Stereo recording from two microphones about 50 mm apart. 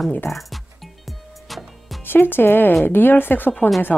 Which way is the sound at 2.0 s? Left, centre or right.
Left.